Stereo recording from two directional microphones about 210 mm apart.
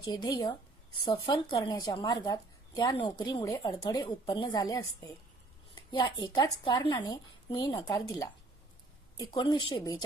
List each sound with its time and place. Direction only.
0.0 s a woman's voice: 20° left (ahead or behind)